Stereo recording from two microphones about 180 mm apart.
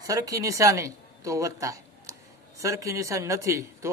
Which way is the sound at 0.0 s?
20° right (ahead or behind).